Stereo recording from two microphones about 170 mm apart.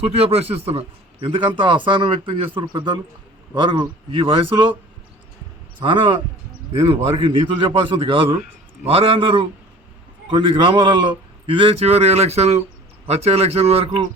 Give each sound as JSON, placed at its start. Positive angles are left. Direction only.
{"t": 0.1, "sound": "a man's voice", "side_deg": -35}
{"t": 5.8, "sound": "a man's voice", "side_deg": -30}